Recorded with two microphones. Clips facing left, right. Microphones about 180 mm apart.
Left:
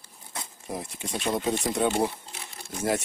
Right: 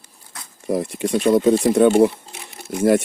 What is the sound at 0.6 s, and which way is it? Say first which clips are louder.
Speech: right 15 dB; 60° right (ahead or behind).